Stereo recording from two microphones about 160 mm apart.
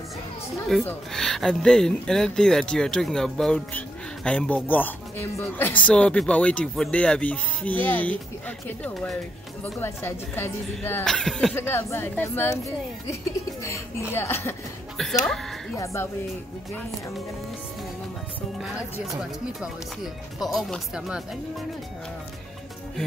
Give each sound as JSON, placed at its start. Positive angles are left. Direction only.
{"t": 0.8, "sound": "speech", "side_deg": 5}
{"t": 11.5, "sound": "speech", "side_deg": 15}
{"t": 15.7, "sound": "speech", "side_deg": 20}
{"t": 18.6, "sound": "speech", "side_deg": -5}